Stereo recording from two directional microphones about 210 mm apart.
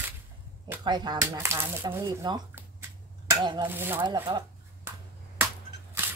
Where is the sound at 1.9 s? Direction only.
15° right (ahead or behind).